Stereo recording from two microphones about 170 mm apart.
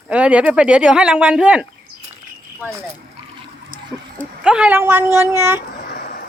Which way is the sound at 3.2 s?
35° right (ahead or behind).